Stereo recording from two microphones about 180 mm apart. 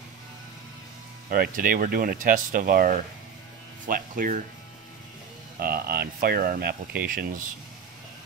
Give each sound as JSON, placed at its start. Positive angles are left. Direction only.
{"t": 1.3, "sound": "speech", "side_deg": -55}
{"t": 5.6, "sound": "speech", "side_deg": -55}